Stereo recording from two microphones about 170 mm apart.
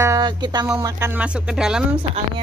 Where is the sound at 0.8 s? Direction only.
20° right (ahead or behind).